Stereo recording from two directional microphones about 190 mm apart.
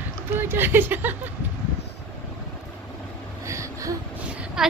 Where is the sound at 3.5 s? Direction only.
15° right (ahead or behind).